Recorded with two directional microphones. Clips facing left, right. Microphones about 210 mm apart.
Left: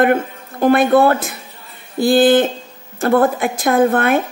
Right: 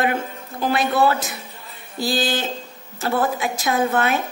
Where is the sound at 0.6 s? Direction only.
55° left (ahead or behind).